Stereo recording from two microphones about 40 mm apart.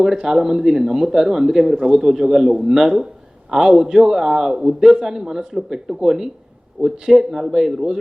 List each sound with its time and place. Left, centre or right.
0.0 s a man's voice: centre